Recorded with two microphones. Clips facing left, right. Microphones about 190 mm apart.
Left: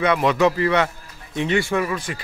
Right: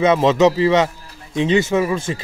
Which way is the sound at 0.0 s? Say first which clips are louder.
Right 4 dB; 25° right (ahead or behind).